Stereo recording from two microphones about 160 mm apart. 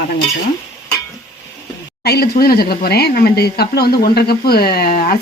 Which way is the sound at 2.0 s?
75° left (ahead or behind).